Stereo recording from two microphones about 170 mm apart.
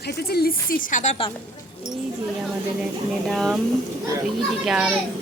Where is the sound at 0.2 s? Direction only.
65° left (ahead or behind); by 1.1 s 50° left (ahead or behind).